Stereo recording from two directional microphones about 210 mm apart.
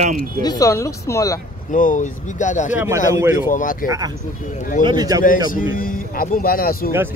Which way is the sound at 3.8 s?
15° right (ahead or behind).